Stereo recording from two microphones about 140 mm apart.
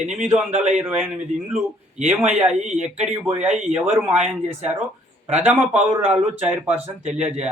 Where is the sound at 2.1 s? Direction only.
5° right (ahead or behind).